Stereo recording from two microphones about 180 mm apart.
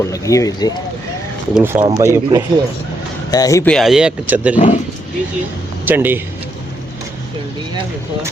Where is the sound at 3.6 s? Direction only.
Centre (ahead or behind).